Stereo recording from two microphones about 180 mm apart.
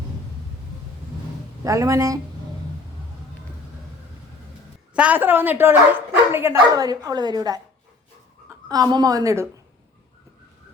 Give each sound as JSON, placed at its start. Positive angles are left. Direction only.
{"t": 1.6, "sound": "speech", "side_deg": -15}
{"t": 4.9, "sound": "a woman's voice", "side_deg": -10}
{"t": 8.7, "sound": "a woman's voice", "side_deg": -20}